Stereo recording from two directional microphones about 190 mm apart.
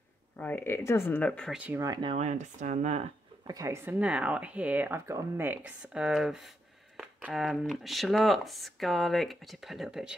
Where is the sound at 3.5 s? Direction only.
15° right (ahead or behind).